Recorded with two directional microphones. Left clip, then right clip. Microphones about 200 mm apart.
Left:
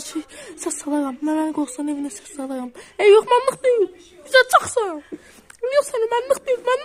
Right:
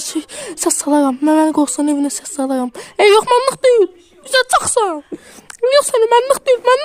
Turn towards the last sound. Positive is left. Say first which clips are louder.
# right 7 dB
turn(degrees=-50)  # may be behind; listen again after turning